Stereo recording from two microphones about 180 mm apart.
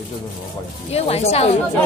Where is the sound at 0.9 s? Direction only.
35° left (ahead or behind).